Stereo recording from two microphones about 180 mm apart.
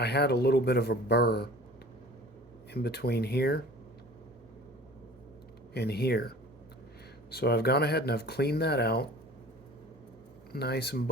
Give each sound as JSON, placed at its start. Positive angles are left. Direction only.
{"t": 0.0, "sound": "speech", "side_deg": 65}
{"t": 2.7, "sound": "speech", "side_deg": 60}
{"t": 5.7, "sound": "speech", "side_deg": 65}
{"t": 7.3, "sound": "speech", "side_deg": 60}
{"t": 10.5, "sound": "speech", "side_deg": 65}